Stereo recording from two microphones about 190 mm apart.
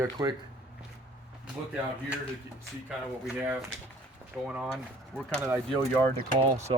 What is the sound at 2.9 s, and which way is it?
Speech, 5° right (ahead or behind).